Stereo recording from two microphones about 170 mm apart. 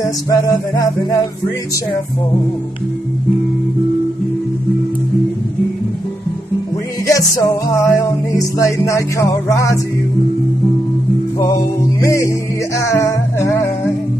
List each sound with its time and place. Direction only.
0.0 s music: 20° left (ahead or behind)
7.1 s music: 20° left (ahead or behind)
12.0 s music: 20° left (ahead or behind)